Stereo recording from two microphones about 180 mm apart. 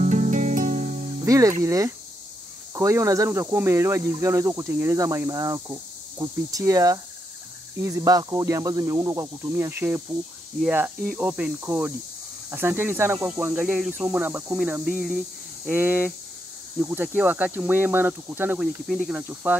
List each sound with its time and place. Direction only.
0.0 s music: 45° right (ahead or behind)
1.2 s music: 20° right (ahead or behind)
1.6 s speech: 15° right (ahead or behind)